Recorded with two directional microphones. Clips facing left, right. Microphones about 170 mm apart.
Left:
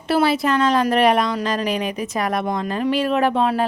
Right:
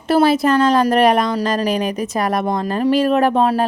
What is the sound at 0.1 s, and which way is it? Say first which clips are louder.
A woman's voice: right 4 dB; 45° right (ahead or behind).